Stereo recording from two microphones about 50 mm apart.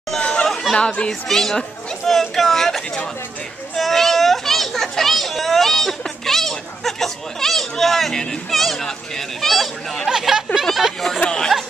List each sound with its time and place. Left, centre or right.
0.2 s chatter: left
0.7 s a child's voice: centre
10.0 s speech: centre
11.1 s speech: centre